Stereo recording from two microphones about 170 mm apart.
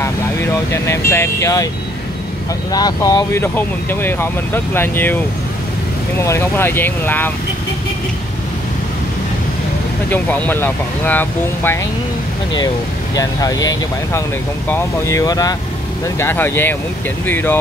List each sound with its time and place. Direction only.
0.7 s speech: 15° left (ahead or behind)
2.7 s speech: 20° left (ahead or behind)
10.0 s speech: 10° left (ahead or behind)
13.1 s speech: 20° left (ahead or behind)